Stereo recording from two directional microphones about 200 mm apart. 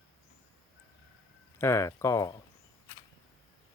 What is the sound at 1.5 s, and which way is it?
Speech, 15° left (ahead or behind).